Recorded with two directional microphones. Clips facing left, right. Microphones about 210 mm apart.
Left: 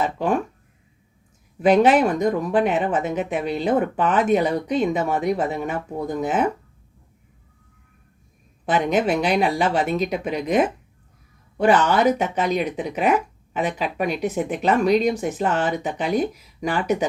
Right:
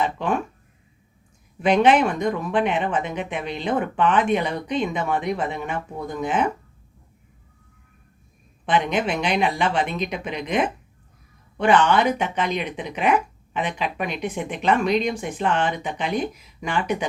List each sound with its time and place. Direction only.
0.0 s speech: 40° left (ahead or behind)
1.6 s speech: 40° left (ahead or behind)
8.6 s speech: 40° left (ahead or behind)